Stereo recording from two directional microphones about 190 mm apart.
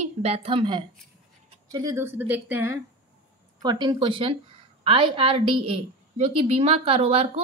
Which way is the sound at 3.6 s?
25° right (ahead or behind).